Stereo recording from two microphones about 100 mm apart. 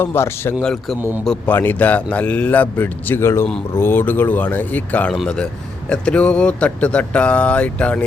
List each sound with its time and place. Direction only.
0.0 s speech: 25° left (ahead or behind)
0.6 s speech: 5° left (ahead or behind)
0.9 s a man's voice: 20° right (ahead or behind)
1.5 s speech: 20° left (ahead or behind)